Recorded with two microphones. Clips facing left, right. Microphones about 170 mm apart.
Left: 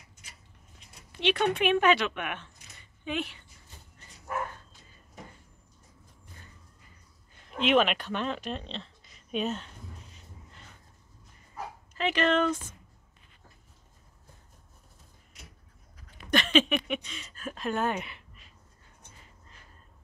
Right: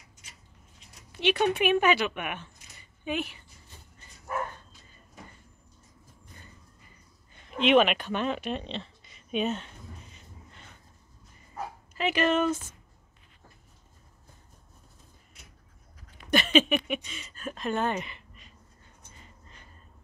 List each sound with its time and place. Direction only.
1.2 s a woman's voice: 5° right (ahead or behind)
7.3 s a sound: centre (ahead or behind)
11.9 s speech: 5° right (ahead or behind)
16.3 s speech: 5° right (ahead or behind)